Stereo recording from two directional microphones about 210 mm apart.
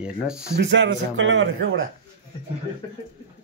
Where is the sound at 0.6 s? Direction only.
55° right (ahead or behind).